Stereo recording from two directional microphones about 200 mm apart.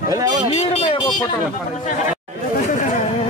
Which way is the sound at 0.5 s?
30° left (ahead or behind).